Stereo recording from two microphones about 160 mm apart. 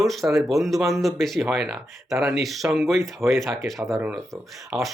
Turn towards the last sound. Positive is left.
turn(degrees=0)  # may be behind; listen again after turning